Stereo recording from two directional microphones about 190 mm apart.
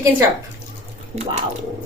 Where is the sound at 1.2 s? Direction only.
35° right (ahead or behind).